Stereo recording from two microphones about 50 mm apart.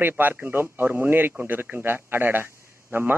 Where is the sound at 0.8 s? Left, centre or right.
Right.